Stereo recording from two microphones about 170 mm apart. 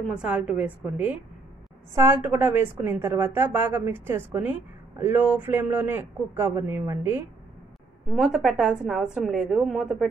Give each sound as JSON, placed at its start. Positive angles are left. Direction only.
{"t": 0.1, "sound": "a woman's voice", "side_deg": -5}
{"t": 8.1, "sound": "a woman's voice", "side_deg": 0}